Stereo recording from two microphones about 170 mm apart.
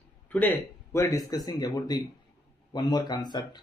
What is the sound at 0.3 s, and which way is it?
Speech, 15° left (ahead or behind).